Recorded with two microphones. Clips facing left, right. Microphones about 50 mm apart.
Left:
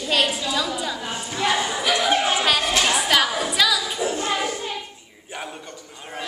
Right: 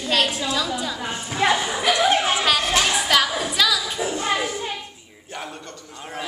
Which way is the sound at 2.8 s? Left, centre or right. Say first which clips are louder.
Even; centre.